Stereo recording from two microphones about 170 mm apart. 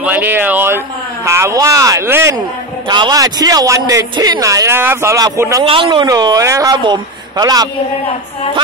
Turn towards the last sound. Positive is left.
turn(degrees=-20)  # may be behind; listen again after turning